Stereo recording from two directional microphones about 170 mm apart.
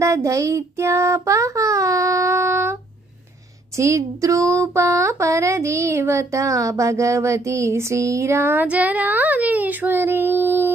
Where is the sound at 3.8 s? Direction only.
20° right (ahead or behind).